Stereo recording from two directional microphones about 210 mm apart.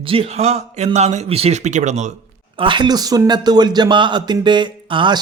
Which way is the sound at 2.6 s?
20° right (ahead or behind).